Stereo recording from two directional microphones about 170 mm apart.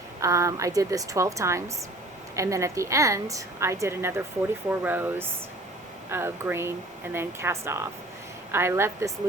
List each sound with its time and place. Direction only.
0.2 s a woman's voice: 20° right (ahead or behind)